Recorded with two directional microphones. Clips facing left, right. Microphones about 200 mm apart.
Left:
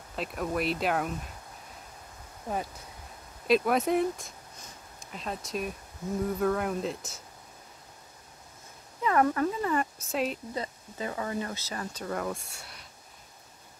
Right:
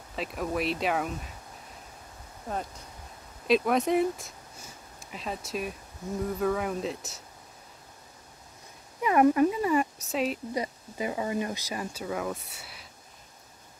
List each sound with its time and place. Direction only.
0.1 s speech: centre (ahead or behind)
2.4 s speech: 5° left (ahead or behind)
9.0 s speech: 15° right (ahead or behind)
10.5 s speech: 15° right (ahead or behind)